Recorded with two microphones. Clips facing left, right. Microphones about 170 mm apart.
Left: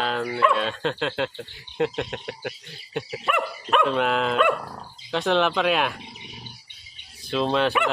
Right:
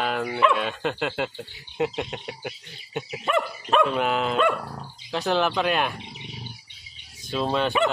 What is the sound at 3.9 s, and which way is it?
Speech, centre (ahead or behind).